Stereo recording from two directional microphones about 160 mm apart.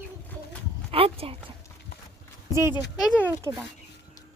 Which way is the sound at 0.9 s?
35° right (ahead or behind).